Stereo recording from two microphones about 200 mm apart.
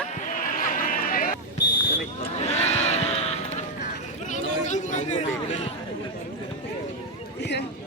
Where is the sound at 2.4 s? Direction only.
35° left (ahead or behind).